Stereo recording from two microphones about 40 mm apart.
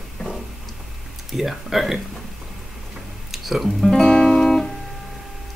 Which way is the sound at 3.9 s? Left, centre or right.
Centre.